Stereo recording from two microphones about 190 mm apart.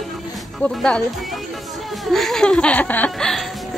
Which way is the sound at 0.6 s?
5° left (ahead or behind).